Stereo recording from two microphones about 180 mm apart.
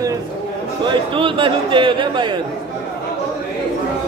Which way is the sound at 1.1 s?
30° right (ahead or behind).